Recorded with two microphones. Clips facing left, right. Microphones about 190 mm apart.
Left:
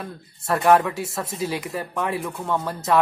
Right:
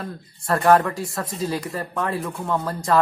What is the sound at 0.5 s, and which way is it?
A woman's voice, centre (ahead or behind).